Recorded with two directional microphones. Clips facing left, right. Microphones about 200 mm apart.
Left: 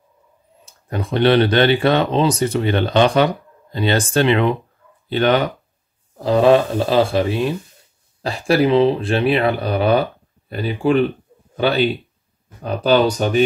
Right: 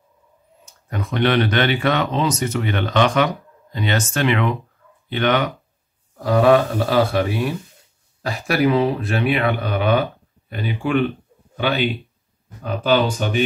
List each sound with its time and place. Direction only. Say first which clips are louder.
0.7 s speech: left 3 dB; 30° left (ahead or behind)